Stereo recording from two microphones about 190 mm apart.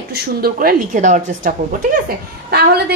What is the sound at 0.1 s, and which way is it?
A woman's voice, 50° right (ahead or behind).